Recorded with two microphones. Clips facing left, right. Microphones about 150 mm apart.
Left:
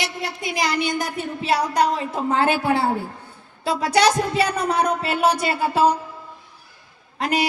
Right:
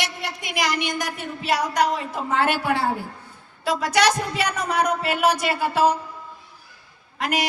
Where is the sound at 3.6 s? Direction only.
30° left (ahead or behind).